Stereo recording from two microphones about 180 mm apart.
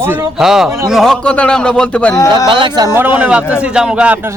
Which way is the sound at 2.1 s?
20° left (ahead or behind).